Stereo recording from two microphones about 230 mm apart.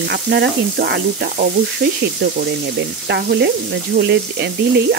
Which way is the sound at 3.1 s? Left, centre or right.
Right.